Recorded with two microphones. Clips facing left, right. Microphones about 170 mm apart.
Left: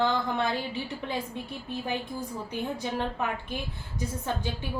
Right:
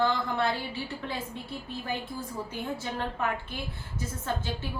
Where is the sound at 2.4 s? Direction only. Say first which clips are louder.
Left 2 dB; 15° left (ahead or behind).